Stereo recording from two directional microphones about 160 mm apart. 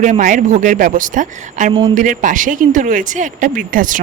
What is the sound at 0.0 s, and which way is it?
Speech, 55° right (ahead or behind).